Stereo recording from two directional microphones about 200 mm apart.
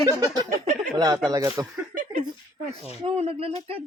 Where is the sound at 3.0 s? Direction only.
30° right (ahead or behind).